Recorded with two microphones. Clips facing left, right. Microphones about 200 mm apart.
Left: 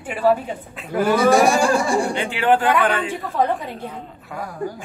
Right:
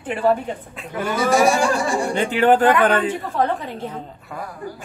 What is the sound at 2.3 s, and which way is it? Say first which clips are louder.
Speech: right 3 dB; 45° right (ahead or behind).